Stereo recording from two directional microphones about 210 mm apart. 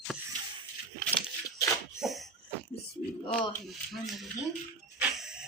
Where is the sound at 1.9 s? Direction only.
Centre (ahead or behind).